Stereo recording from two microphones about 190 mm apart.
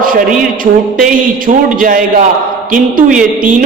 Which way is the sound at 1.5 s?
45° right (ahead or behind).